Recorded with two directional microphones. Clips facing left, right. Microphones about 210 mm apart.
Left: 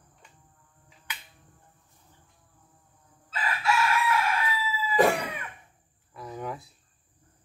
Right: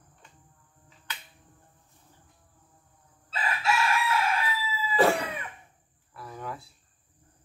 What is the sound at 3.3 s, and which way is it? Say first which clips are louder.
Chicken: left 1 dB; 25° right (ahead or behind).